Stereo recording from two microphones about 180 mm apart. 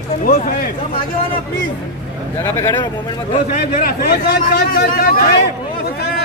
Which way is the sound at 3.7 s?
55° left (ahead or behind).